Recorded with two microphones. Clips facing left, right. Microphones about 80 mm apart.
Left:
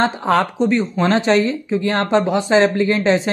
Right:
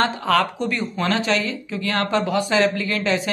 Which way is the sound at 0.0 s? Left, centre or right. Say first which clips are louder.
Left 3 dB; left.